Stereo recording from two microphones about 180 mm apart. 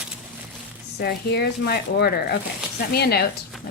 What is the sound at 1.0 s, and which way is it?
A woman's voice, 60° left (ahead or behind).